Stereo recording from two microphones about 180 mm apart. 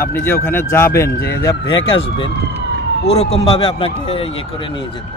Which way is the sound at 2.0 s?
30° left (ahead or behind).